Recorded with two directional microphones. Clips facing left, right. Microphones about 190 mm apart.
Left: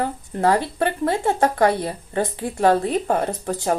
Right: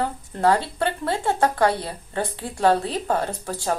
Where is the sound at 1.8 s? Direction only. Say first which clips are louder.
Left 4 dB; 20° left (ahead or behind).